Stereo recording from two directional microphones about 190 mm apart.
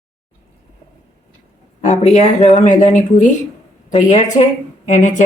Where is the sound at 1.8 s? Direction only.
35° left (ahead or behind).